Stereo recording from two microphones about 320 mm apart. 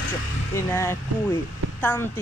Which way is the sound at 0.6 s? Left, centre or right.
Centre.